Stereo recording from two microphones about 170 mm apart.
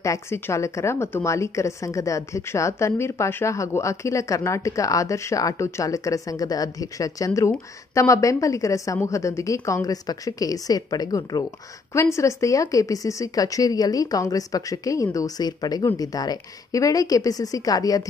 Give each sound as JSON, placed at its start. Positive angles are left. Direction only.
{"t": 0.0, "sound": "a woman's voice", "side_deg": 15}